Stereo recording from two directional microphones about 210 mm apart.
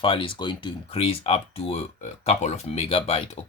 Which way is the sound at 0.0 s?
25° left (ahead or behind).